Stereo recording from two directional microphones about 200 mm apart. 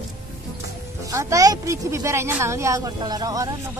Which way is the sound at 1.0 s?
15° right (ahead or behind).